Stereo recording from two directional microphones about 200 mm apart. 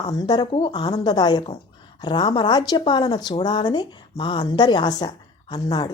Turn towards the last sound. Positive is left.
turn(degrees=20)  # may be behind; listen again after turning